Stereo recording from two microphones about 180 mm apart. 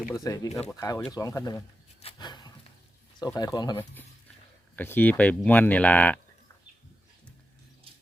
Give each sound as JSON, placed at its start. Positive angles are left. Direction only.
{"t": 0.1, "sound": "speech", "side_deg": 20}
{"t": 2.1, "sound": "a sound", "side_deg": 25}
{"t": 3.2, "sound": "speech", "side_deg": 20}
{"t": 4.8, "sound": "speech", "side_deg": 10}